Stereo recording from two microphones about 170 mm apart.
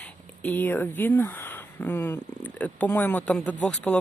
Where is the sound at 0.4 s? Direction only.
10° left (ahead or behind).